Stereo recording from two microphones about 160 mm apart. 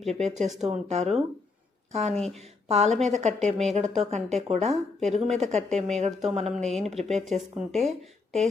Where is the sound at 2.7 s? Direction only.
40° right (ahead or behind).